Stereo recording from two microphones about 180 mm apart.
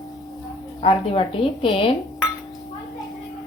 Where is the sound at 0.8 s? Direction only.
30° left (ahead or behind).